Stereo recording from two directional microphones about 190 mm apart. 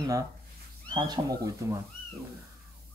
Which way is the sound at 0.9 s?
25° right (ahead or behind).